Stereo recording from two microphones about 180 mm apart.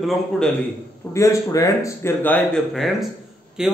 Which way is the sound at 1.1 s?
15° left (ahead or behind).